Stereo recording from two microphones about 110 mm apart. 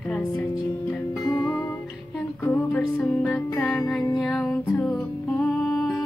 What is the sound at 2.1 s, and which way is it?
Music, 20° left (ahead or behind).